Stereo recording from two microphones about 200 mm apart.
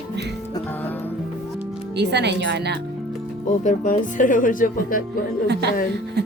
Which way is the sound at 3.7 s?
40° left (ahead or behind).